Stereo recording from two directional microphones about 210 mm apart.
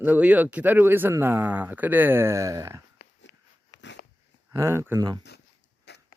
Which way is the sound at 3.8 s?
55° left (ahead or behind).